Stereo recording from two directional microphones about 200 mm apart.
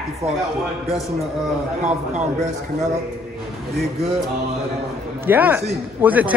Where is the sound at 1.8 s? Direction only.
35° right (ahead or behind).